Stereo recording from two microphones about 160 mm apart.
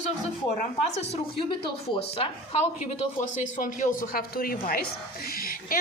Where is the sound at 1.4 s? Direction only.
30° left (ahead or behind).